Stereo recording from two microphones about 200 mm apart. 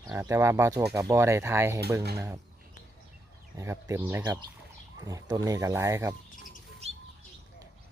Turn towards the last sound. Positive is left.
turn(degrees=-30)  # may be behind; listen again after turning